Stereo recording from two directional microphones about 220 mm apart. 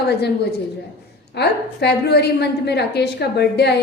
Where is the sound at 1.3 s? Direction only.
50° left (ahead or behind).